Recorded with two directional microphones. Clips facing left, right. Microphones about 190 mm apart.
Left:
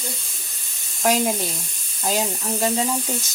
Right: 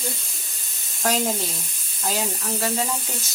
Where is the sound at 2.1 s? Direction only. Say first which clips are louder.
Left 3 dB; 20° left (ahead or behind).